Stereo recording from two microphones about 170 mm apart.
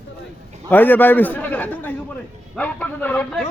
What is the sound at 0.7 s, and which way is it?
A man's voice, 10° left (ahead or behind).